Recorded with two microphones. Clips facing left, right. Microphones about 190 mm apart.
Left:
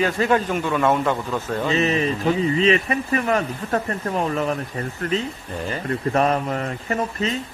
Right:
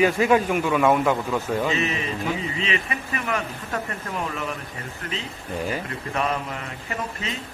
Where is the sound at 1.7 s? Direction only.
35° left (ahead or behind).